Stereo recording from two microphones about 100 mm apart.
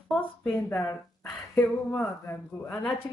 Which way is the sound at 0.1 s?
Centre (ahead or behind).